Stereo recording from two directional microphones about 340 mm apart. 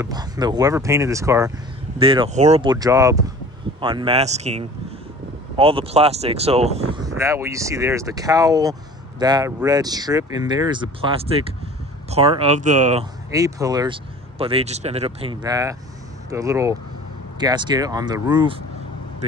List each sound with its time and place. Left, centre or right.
0.0 s speech: centre
13.3 s speech: centre